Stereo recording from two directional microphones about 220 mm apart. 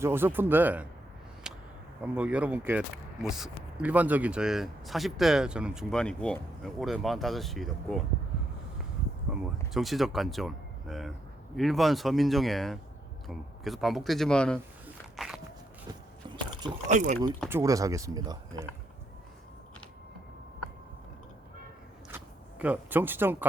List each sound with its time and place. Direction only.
0.0 s speech: 10° right (ahead or behind)
1.5 s a sound: 5° right (ahead or behind)
2.1 s speech: 5° right (ahead or behind)
9.7 s speech: centre (ahead or behind)
14.8 s a sound: centre (ahead or behind)
16.8 s speech: 30° right (ahead or behind)
17.5 s speech: 15° right (ahead or behind)
22.1 s speech: 5° right (ahead or behind)